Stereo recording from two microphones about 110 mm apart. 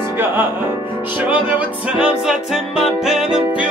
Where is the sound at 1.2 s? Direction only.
15° right (ahead or behind).